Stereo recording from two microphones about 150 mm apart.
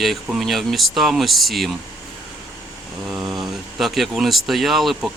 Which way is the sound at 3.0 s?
5° right (ahead or behind).